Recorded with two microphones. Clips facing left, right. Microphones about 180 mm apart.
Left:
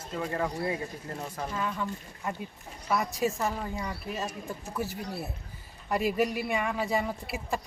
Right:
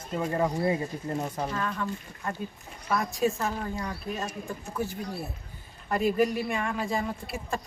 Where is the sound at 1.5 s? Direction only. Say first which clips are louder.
Right 1 dB; 10° left (ahead or behind).